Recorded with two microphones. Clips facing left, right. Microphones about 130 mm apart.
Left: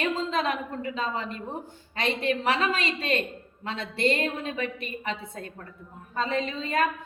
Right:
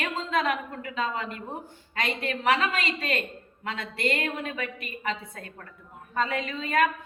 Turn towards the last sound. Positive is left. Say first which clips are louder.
# even
turn(degrees=25)  # may be behind; listen again after turning